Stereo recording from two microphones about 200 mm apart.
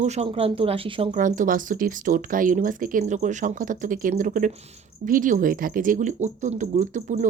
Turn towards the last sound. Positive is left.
turn(degrees=-40)  # may be behind; listen again after turning